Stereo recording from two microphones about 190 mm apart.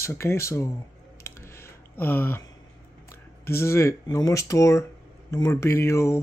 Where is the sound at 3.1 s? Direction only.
15° left (ahead or behind).